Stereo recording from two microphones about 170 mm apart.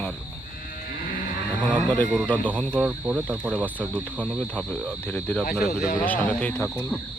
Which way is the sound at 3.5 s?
10° left (ahead or behind).